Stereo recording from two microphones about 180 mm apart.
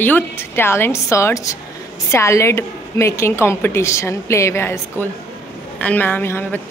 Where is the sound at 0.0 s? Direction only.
10° left (ahead or behind).